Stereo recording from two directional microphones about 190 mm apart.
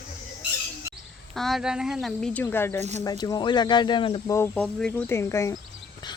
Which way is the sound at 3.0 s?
20° left (ahead or behind).